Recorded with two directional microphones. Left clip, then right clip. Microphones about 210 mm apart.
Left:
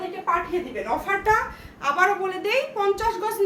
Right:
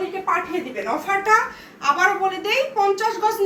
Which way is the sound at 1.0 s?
45° left (ahead or behind).